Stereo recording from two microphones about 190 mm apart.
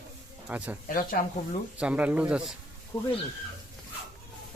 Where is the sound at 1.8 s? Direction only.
5° right (ahead or behind).